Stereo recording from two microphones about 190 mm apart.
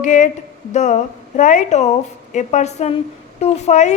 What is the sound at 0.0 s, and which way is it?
Speech, 40° left (ahead or behind).